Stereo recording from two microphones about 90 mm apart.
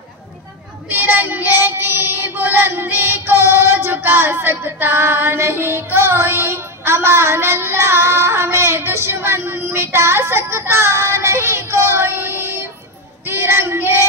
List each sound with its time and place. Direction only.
0.8 s child singing: 20° right (ahead or behind)